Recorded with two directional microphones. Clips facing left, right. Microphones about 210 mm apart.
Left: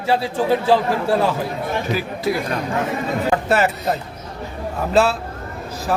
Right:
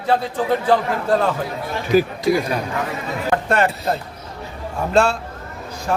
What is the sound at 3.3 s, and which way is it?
Speech, 5° left (ahead or behind).